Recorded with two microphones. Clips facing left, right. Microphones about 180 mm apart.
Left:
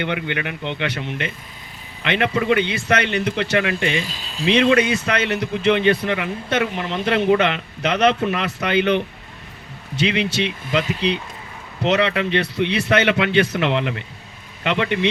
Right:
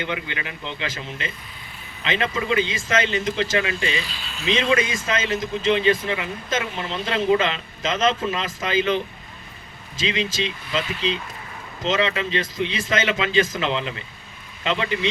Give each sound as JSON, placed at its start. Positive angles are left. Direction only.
{"t": 0.0, "sound": "speech", "side_deg": 65}
{"t": 4.7, "sound": "speech", "side_deg": 65}